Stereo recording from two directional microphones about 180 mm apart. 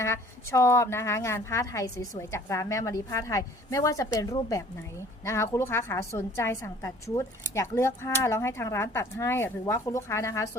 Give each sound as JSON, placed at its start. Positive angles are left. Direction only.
{"t": 0.0, "sound": "a woman's voice", "side_deg": 15}